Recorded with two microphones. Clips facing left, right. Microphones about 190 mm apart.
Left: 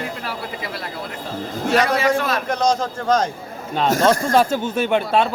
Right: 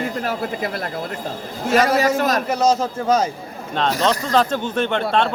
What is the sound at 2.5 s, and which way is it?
Speech, 5° right (ahead or behind).